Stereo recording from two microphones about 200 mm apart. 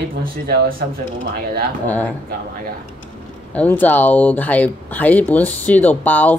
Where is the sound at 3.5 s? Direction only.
10° left (ahead or behind).